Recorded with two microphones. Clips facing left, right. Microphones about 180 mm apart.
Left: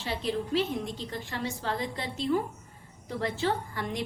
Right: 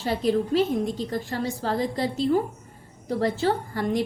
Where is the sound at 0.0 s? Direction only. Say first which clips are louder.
Right 8 dB; 45° right (ahead or behind).